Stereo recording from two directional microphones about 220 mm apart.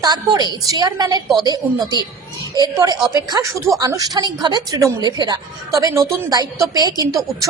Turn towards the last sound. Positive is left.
turn(degrees=-15)  # may be behind; listen again after turning